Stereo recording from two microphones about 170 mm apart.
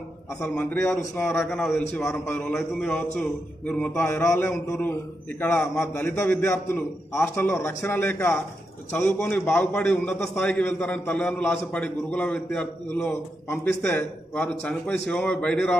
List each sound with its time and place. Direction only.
0.4 s a man's voice: 10° left (ahead or behind)
2.0 s a man's voice: 15° left (ahead or behind)